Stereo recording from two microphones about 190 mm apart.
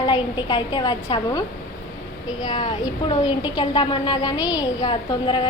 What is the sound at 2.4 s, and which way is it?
A woman's voice, 20° left (ahead or behind).